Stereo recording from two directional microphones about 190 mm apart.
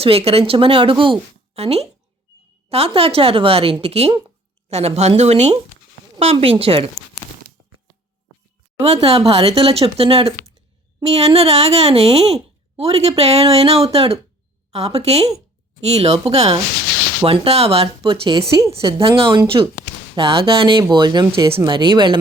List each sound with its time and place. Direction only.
0.0 s speech: 30° right (ahead or behind)
8.8 s speech: 30° right (ahead or behind)